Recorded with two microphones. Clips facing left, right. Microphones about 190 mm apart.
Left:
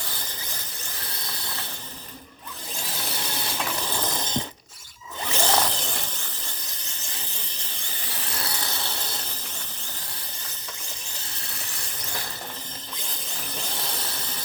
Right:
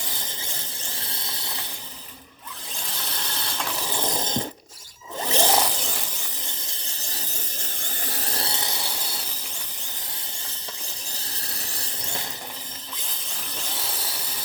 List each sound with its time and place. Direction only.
3.3 s mechanisms: 10° left (ahead or behind)
3.7 s mechanisms: 5° right (ahead or behind)
5.4 s zipper: 10° right (ahead or behind)
7.9 s a sound: 45° right (ahead or behind); by 8.9 s 15° right (ahead or behind)